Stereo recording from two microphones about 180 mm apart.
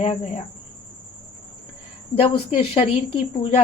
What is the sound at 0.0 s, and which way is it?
Speech, 40° left (ahead or behind).